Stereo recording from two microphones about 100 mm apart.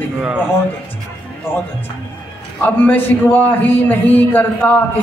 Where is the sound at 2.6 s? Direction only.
20° left (ahead or behind).